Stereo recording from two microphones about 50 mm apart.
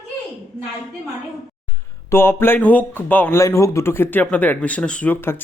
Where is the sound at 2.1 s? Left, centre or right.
Left.